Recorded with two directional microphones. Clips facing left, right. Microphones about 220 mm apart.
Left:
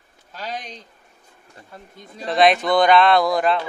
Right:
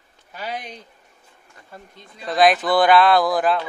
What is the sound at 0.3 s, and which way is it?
Speech, 10° right (ahead or behind).